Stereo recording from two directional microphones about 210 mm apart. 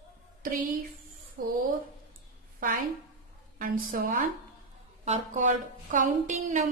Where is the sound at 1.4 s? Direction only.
45° right (ahead or behind).